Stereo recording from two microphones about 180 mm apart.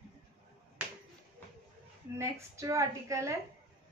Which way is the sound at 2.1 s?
15° right (ahead or behind).